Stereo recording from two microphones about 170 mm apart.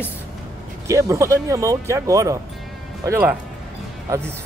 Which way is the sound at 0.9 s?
20° right (ahead or behind).